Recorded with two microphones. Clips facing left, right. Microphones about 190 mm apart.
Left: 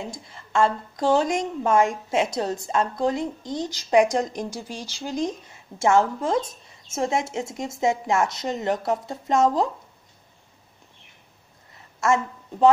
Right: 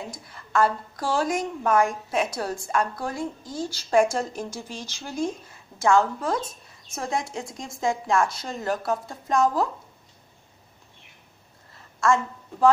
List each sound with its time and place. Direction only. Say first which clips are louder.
0.3 s a woman's voice: left 1 dB; 25° left (ahead or behind)
12.0 s a woman's voice: even; 20° left (ahead or behind)